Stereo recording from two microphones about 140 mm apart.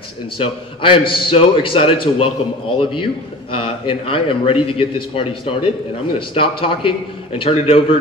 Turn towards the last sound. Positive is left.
turn(degrees=40)  # may be behind; listen again after turning